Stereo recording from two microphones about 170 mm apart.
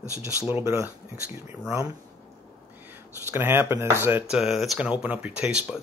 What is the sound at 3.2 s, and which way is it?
Speech, 15° right (ahead or behind).